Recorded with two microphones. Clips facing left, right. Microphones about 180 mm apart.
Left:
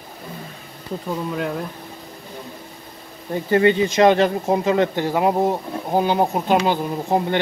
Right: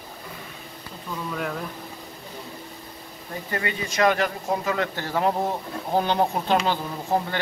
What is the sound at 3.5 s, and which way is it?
Speech, 30° left (ahead or behind).